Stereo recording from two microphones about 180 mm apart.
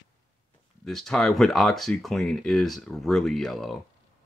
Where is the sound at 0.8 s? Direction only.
Centre (ahead or behind).